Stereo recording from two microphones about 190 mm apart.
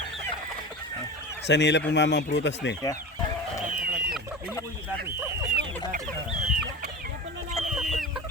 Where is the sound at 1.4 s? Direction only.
65° left (ahead or behind).